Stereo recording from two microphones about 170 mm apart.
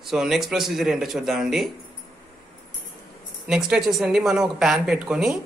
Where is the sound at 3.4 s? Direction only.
5° right (ahead or behind).